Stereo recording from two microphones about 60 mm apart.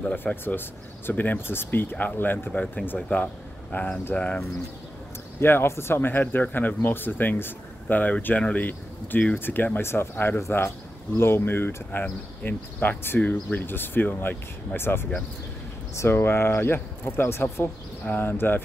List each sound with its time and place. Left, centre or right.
0.1 s speech: left
3.7 s speech: left
4.1 s speech: left
5.4 s speech: left
9.8 s speech: left
10.4 s speech: left